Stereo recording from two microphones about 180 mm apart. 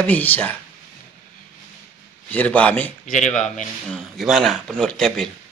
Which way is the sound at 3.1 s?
45° left (ahead or behind).